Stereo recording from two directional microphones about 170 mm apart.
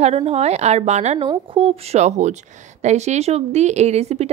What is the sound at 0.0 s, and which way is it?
Speech, 35° right (ahead or behind).